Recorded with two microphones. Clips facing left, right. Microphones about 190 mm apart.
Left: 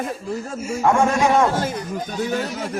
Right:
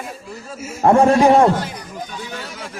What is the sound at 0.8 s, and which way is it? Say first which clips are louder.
Speech: right 6 dB; 35° right (ahead or behind).